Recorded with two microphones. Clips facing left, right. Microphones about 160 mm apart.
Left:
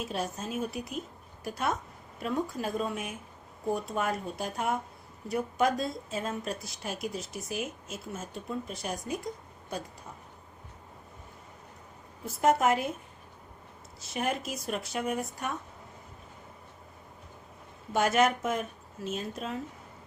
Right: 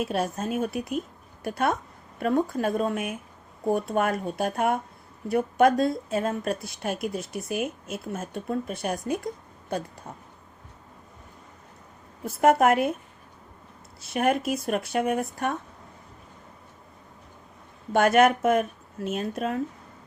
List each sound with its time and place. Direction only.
0.0 s a woman's voice: 65° right (ahead or behind)
12.2 s a woman's voice: 60° right (ahead or behind)
14.0 s a woman's voice: 60° right (ahead or behind)
17.9 s a woman's voice: 60° right (ahead or behind)